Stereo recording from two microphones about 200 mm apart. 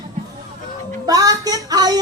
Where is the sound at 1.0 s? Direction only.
20° right (ahead or behind).